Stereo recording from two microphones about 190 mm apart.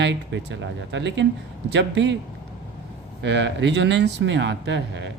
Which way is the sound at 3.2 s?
65° right (ahead or behind).